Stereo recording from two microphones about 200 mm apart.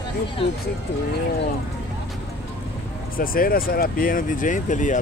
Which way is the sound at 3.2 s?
45° left (ahead or behind).